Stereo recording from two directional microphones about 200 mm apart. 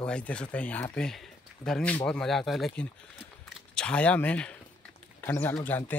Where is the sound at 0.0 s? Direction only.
5° left (ahead or behind).